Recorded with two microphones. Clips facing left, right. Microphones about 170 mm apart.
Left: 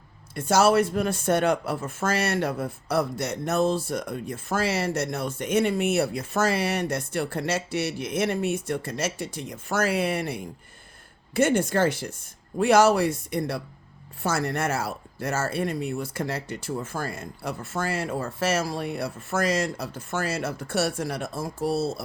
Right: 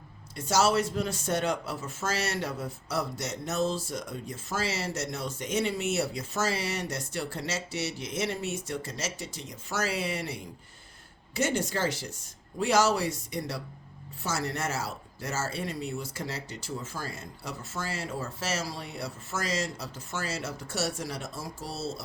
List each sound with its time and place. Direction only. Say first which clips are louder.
0.3 s speech: left 6 dB; 55° left (ahead or behind)